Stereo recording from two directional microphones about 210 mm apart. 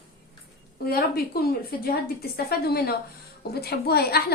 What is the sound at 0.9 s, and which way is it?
A woman's voice, 45° left (ahead or behind).